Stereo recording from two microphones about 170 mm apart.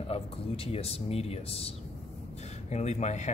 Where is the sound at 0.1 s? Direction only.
35° left (ahead or behind).